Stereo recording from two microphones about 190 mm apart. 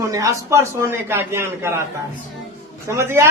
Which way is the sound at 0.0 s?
15° right (ahead or behind).